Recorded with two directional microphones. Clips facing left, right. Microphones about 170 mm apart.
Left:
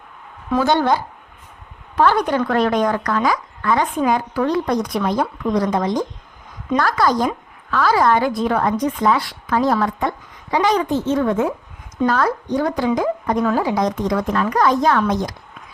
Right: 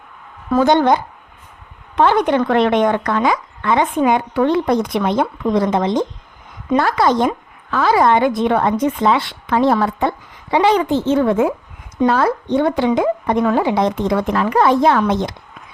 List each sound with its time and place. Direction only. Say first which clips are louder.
0.6 s a woman's voice: right 4 dB; 20° right (ahead or behind)
8.2 s a woman's voice: right 3 dB; centre (ahead or behind)
8.4 s a woman's voice: right 3 dB; 25° right (ahead or behind)